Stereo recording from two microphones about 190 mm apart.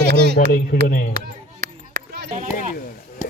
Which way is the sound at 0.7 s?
50° left (ahead or behind).